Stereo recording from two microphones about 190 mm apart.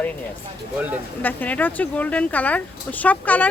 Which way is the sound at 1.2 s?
10° left (ahead or behind).